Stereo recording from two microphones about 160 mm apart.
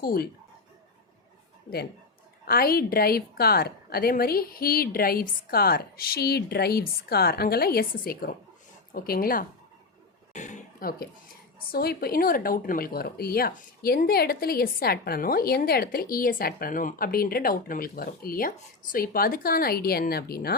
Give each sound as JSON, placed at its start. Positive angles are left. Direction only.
{"t": 0.0, "sound": "speech", "side_deg": 70}
{"t": 2.5, "sound": "speech", "side_deg": 65}
{"t": 10.3, "sound": "a sound", "side_deg": 50}
{"t": 11.7, "sound": "speech", "side_deg": 75}